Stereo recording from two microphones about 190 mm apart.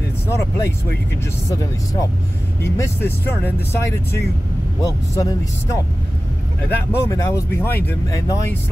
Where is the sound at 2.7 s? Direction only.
15° left (ahead or behind).